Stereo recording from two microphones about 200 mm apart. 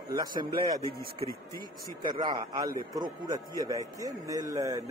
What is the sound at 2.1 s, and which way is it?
A man's voice, 20° right (ahead or behind).